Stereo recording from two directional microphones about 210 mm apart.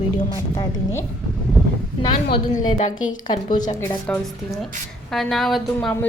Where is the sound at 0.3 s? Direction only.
20° left (ahead or behind).